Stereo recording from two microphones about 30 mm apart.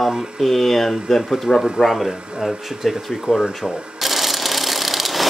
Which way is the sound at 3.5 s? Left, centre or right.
Centre.